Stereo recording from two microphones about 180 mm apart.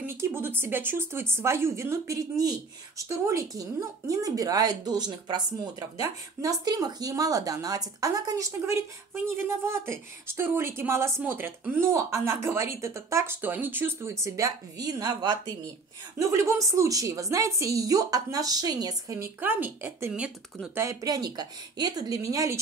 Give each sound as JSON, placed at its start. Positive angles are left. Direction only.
{"t": 0.0, "sound": "a woman's voice", "side_deg": -15}
{"t": 16.2, "sound": "a woman's voice", "side_deg": -20}